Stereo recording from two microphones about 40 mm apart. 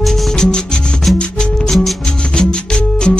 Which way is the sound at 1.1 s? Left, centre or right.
Centre.